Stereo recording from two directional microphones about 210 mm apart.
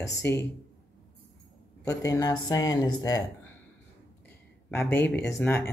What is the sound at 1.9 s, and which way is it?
Speech, 15° left (ahead or behind).